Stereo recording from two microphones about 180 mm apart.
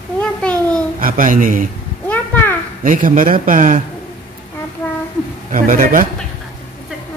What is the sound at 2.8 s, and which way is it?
Speech, 50° right (ahead or behind).